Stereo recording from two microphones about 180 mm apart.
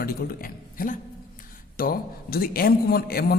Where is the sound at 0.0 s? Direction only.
55° left (ahead or behind).